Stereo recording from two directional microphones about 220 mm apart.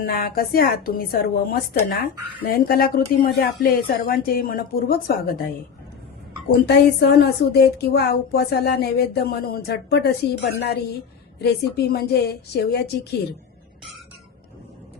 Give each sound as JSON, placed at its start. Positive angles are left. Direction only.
{"t": 0.0, "sound": "speech", "side_deg": 40}
{"t": 6.7, "sound": "speech", "side_deg": 50}